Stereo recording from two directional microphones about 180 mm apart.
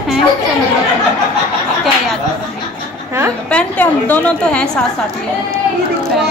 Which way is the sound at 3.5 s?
10° left (ahead or behind).